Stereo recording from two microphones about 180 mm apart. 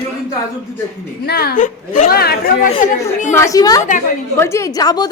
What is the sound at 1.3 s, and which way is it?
A woman's voice, 60° left (ahead or behind).